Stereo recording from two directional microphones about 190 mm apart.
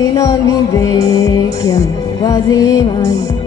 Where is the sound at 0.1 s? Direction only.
20° left (ahead or behind).